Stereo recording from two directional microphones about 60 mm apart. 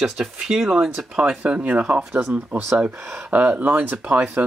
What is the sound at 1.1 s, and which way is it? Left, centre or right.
Speech, centre.